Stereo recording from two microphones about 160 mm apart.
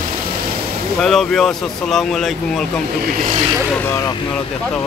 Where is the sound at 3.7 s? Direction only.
15° left (ahead or behind).